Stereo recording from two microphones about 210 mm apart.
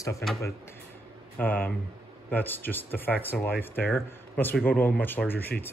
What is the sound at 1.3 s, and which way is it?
Speech, 10° left (ahead or behind).